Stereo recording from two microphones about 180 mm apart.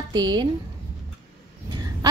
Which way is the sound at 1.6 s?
25° right (ahead or behind).